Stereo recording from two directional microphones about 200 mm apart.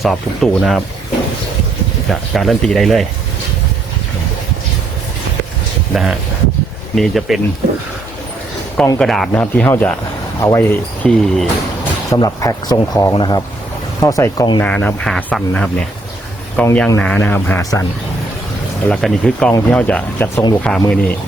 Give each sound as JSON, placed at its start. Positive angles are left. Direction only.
{"t": 0.0, "sound": "speech", "side_deg": 0}
{"t": 2.0, "sound": "speech", "side_deg": 0}
{"t": 5.9, "sound": "speech", "side_deg": 0}
{"t": 9.0, "sound": "speech", "side_deg": 0}
{"t": 14.6, "sound": "speech", "side_deg": 10}
{"t": 18.9, "sound": "speech", "side_deg": 5}